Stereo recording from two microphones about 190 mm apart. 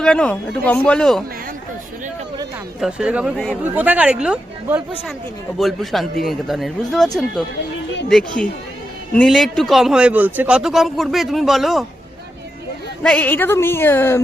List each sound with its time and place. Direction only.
0.0 s a man's voice: 5° left (ahead or behind)
2.8 s a man's voice: 5° right (ahead or behind)
9.1 s a man's voice: centre (ahead or behind)
13.0 s speech: 5° left (ahead or behind)